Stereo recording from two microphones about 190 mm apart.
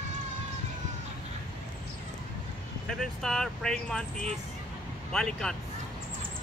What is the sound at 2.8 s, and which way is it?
Speech, centre (ahead or behind).